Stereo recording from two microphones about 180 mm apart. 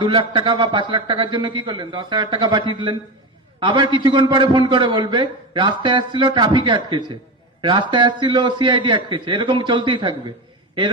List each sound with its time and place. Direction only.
0.0 s a man's voice: 25° right (ahead or behind)